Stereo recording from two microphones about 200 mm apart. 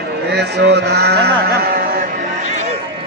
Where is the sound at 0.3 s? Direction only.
55° right (ahead or behind).